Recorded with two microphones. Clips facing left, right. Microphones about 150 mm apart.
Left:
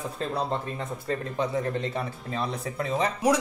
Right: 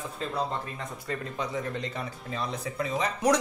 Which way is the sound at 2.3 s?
30° left (ahead or behind).